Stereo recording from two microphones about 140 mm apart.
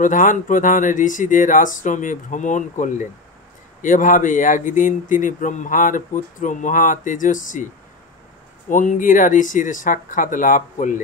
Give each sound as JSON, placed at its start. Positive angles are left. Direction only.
{"t": 0.0, "sound": "speech", "side_deg": 70}
{"t": 8.6, "sound": "speech", "side_deg": 65}